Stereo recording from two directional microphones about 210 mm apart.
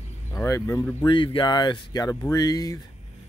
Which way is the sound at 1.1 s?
20° left (ahead or behind).